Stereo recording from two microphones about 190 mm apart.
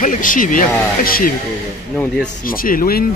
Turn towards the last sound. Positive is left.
turn(degrees=50)  # may be behind; listen again after turning